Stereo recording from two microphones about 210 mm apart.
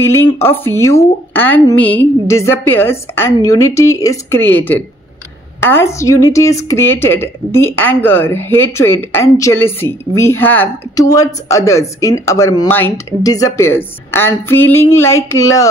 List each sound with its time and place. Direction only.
0.0 s a woman's voice: 10° left (ahead or behind)